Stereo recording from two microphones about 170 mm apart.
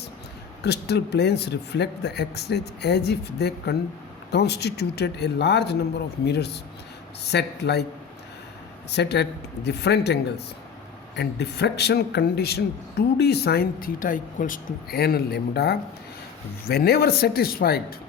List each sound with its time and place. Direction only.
0.6 s speech: 75° left (ahead or behind)
8.9 s speech: 75° left (ahead or behind)